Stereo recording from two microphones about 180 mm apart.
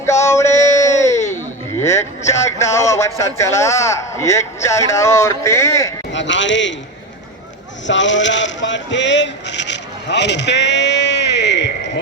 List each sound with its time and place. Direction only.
0.0 s a sound: 15° left (ahead or behind)
1.8 s speech: 15° left (ahead or behind)
6.1 s a man's voice: 90° left
7.9 s speech: 90° left; by 11.7 s 75° left (ahead or behind)